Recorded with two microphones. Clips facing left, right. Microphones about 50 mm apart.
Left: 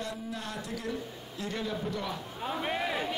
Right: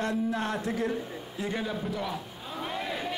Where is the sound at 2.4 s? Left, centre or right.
Left.